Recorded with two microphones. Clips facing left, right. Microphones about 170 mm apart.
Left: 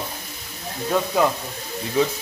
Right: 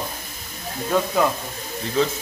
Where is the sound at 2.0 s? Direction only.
10° left (ahead or behind).